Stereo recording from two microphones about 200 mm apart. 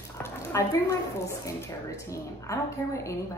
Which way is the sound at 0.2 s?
15° left (ahead or behind).